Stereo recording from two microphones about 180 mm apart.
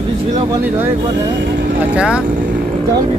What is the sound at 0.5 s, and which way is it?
Speech, 10° right (ahead or behind).